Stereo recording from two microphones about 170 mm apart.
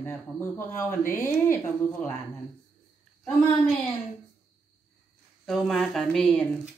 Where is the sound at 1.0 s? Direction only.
50° left (ahead or behind).